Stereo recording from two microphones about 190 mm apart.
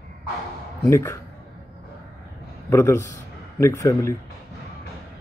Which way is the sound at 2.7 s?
15° left (ahead or behind).